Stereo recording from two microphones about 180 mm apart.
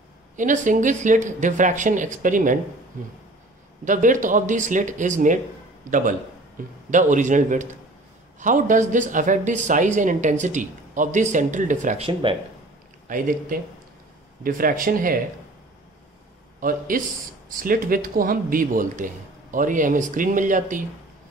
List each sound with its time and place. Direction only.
0.4 s a man's voice: 45° right (ahead or behind)
3.8 s a man's voice: 45° right (ahead or behind)
12.1 s speech: 30° right (ahead or behind)
13.1 s a man's voice: 50° right (ahead or behind)
16.5 s a man's voice: 50° right (ahead or behind)